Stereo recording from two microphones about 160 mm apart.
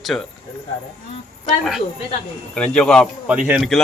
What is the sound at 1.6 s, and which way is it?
Speech, centre (ahead or behind).